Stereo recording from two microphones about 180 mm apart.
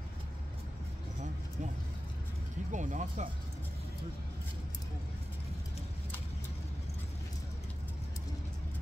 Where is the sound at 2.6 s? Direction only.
45° right (ahead or behind).